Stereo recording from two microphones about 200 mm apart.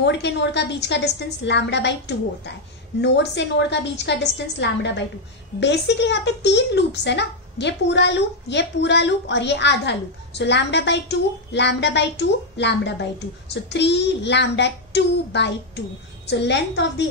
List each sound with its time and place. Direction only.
0.0 s speech: 60° left (ahead or behind)